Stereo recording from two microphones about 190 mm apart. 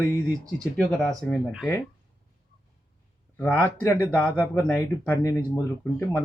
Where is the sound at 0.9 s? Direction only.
Centre (ahead or behind).